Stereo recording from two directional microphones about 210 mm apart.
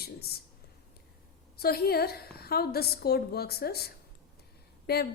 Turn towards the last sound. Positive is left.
turn(degrees=50)  # may be behind; listen again after turning